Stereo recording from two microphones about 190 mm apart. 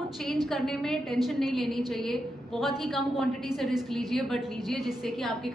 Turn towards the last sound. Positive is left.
turn(degrees=0)  # may be behind; listen again after turning